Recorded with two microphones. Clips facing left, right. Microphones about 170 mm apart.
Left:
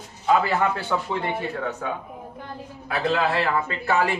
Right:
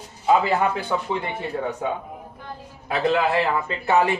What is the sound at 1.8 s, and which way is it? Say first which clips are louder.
Speech: right 3 dB; 20° right (ahead or behind).